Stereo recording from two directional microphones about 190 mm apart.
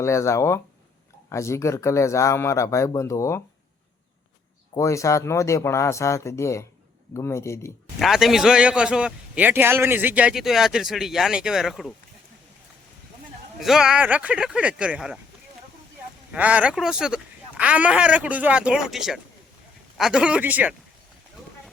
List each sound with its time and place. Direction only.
0.0 s speech: 15° left (ahead or behind)
4.7 s speech: 15° left (ahead or behind)
7.9 s a man's voice: centre (ahead or behind)
13.6 s a man's voice: centre (ahead or behind)
16.3 s a man's voice: 5° right (ahead or behind)